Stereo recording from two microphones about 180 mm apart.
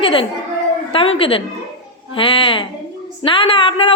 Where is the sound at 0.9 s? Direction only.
30° left (ahead or behind).